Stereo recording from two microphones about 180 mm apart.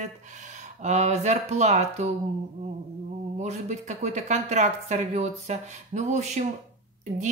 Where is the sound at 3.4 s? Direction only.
40° right (ahead or behind).